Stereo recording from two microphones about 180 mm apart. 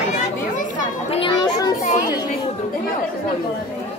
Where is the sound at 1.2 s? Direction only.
25° left (ahead or behind).